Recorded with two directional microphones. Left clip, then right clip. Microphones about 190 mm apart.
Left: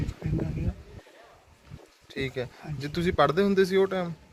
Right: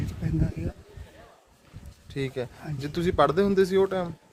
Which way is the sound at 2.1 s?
10° right (ahead or behind).